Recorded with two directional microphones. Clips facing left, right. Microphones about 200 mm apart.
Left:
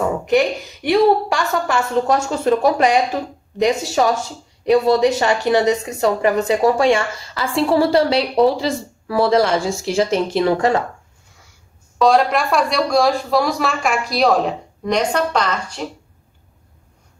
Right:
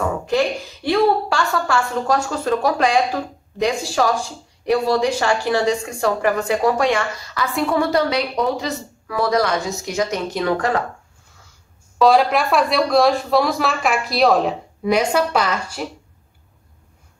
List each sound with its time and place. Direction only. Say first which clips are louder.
0.0 s a woman's voice: left 3 dB; 20° left (ahead or behind)
12.0 s speech: even; 5° right (ahead or behind)